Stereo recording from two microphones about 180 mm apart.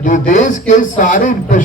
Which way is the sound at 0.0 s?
45° left (ahead or behind).